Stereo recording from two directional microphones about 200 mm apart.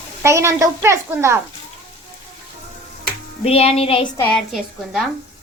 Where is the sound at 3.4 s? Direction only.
30° left (ahead or behind).